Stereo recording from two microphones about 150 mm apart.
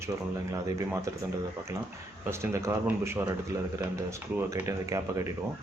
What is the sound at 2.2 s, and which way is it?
Speech, 20° right (ahead or behind).